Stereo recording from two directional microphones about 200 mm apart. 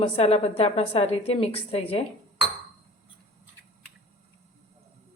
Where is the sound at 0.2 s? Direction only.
30° left (ahead or behind).